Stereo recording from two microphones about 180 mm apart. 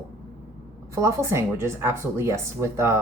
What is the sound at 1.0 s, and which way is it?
Speech, 15° right (ahead or behind).